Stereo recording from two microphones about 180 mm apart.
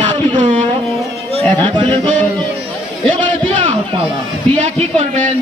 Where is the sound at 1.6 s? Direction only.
30° right (ahead or behind).